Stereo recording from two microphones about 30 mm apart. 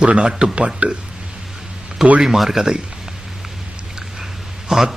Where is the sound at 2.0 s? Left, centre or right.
Centre.